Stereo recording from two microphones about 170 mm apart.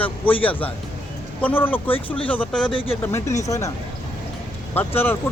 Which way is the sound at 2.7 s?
30° left (ahead or behind).